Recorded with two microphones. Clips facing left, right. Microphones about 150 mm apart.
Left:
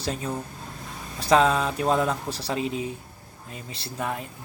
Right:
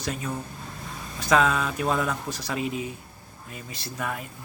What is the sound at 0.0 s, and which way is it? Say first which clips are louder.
Speech: left 2 dB; 30° left (ahead or behind).